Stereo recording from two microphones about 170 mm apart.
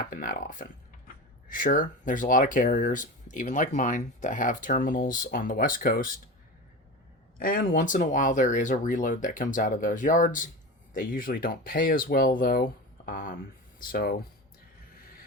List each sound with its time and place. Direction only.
0.1 s speech: 55° left (ahead or behind)
7.3 s speech: 55° left (ahead or behind)